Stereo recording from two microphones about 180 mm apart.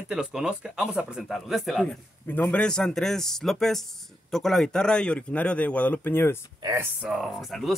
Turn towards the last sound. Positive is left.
turn(degrees=0)  # may be behind; listen again after turning